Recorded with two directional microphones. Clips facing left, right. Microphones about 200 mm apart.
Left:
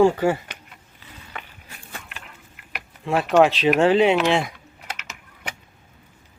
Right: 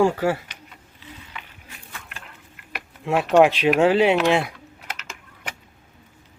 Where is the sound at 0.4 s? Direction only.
50° left (ahead or behind).